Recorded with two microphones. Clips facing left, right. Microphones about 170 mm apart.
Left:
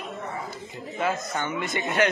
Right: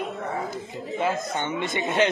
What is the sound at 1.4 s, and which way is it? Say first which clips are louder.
Speech: right 2 dB; 25° right (ahead or behind).